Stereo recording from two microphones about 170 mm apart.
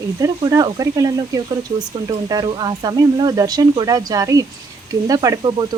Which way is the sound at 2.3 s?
25° right (ahead or behind).